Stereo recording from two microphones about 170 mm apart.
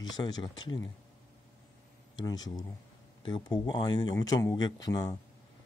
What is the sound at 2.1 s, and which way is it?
Speech, 25° left (ahead or behind).